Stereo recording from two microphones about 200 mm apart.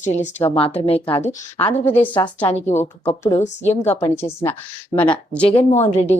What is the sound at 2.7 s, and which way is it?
A woman's voice, 35° left (ahead or behind).